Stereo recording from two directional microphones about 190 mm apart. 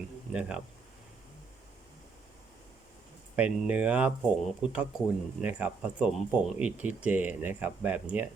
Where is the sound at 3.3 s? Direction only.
5° right (ahead or behind).